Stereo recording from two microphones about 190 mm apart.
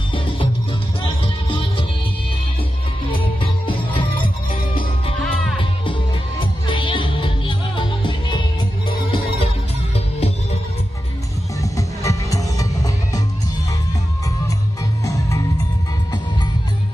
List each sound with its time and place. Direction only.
1.2 s music: 30° left (ahead or behind)
3.1 s music: 25° left (ahead or behind)
4.2 s music: 50° left (ahead or behind)
6.7 s music: 25° left (ahead or behind)
11.6 s music: 15° left (ahead or behind)
15.0 s music: 15° left (ahead or behind)